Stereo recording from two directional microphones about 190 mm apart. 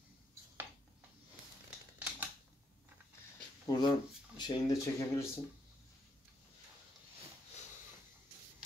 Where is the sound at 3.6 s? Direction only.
20° left (ahead or behind).